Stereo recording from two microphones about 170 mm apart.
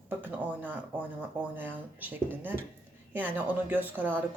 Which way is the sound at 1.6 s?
10° right (ahead or behind).